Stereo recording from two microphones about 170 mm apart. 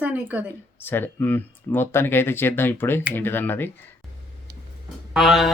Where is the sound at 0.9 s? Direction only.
10° left (ahead or behind).